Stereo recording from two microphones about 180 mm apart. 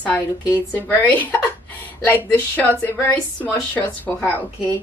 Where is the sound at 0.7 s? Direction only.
10° left (ahead or behind).